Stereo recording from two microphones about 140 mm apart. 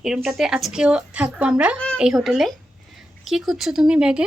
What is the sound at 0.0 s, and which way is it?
Speech, centre (ahead or behind).